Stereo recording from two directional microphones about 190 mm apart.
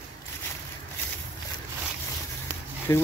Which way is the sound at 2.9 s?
15° left (ahead or behind).